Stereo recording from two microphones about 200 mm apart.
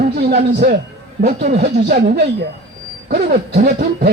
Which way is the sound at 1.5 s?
50° right (ahead or behind).